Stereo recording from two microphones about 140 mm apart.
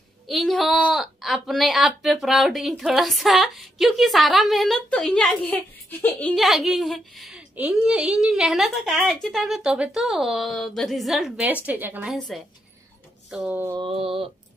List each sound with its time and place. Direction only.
0.3 s a woman's voice: centre (ahead or behind)
6.3 s a woman's voice: centre (ahead or behind)
12.3 s a woman's voice: centre (ahead or behind)
13.7 s a sound: 40° right (ahead or behind)